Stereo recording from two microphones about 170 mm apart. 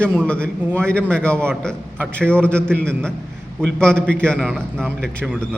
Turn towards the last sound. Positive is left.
turn(degrees=0)  # may be behind; listen again after turning